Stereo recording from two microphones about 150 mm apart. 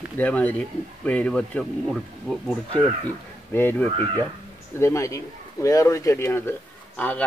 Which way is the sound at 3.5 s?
15° left (ahead or behind).